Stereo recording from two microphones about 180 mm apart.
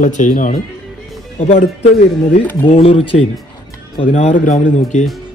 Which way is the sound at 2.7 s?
30° left (ahead or behind).